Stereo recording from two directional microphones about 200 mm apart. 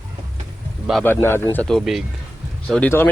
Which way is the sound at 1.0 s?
10° left (ahead or behind).